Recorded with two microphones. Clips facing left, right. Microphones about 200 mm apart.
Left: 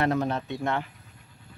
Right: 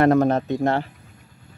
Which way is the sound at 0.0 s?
50° right (ahead or behind).